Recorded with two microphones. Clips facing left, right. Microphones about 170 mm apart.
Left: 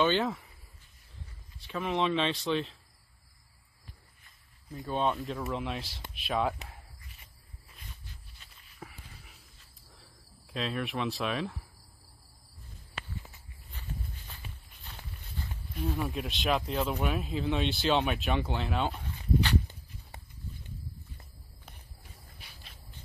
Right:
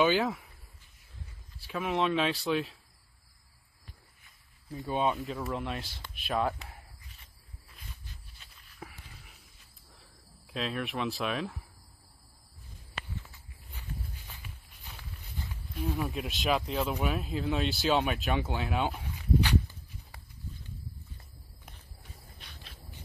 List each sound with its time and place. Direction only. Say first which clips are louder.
0.0 s speech: right 1 dB; 5° right (ahead or behind)
1.6 s speech: even; 5° right (ahead or behind)
4.8 s speech: even; 10° right (ahead or behind)
8.8 s a sound: right 1 dB; 5° right (ahead or behind)
9.9 s speech: even; centre (ahead or behind)
13.7 s insect: left 1 dB; 10° right (ahead or behind)
15.8 s speech: even; 10° right (ahead or behind)
20.1 s horse: left 3 dB; 20° left (ahead or behind)
22.4 s cricket: right 2 dB; centre (ahead or behind)